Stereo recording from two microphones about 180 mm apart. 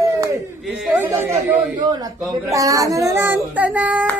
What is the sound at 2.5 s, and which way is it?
Speech, 20° right (ahead or behind).